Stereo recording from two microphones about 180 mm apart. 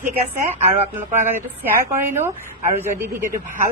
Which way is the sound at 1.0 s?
10° right (ahead or behind).